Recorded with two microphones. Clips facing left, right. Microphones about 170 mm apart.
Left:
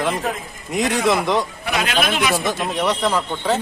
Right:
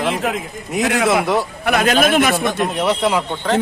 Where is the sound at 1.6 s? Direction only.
50° right (ahead or behind).